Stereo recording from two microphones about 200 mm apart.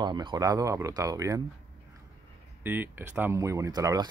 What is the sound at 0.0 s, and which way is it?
Speech, 20° right (ahead or behind).